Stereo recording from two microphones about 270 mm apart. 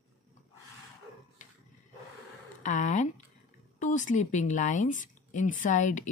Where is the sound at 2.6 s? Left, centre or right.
Left.